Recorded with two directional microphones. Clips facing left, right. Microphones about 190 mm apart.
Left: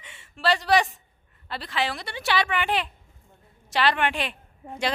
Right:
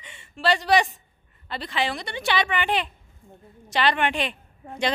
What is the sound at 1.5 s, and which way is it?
Speech, centre (ahead or behind).